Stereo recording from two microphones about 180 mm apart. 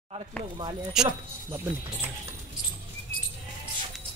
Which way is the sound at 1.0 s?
15° right (ahead or behind).